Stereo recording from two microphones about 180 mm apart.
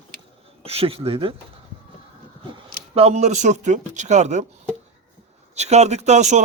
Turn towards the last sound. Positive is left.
turn(degrees=-40)  # may be behind; listen again after turning